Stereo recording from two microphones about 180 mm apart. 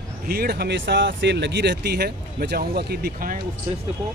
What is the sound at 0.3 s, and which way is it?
Speech, 60° right (ahead or behind).